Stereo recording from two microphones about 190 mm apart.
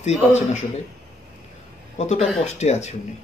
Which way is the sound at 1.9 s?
35° left (ahead or behind).